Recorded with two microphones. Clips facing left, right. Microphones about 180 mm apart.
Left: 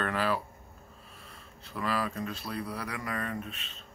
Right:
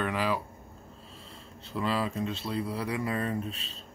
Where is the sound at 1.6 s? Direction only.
25° right (ahead or behind).